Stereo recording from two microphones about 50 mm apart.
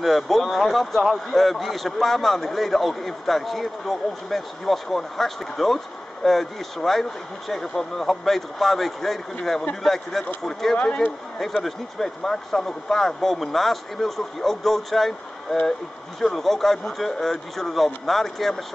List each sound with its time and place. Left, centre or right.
0.0 s a man's voice: centre
10.8 s a man's voice: left
11.6 s speech: centre